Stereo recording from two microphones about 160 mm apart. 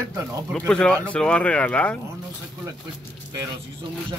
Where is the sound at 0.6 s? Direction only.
5° left (ahead or behind).